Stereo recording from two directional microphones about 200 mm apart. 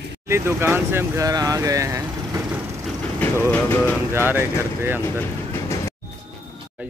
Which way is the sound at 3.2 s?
10° left (ahead or behind).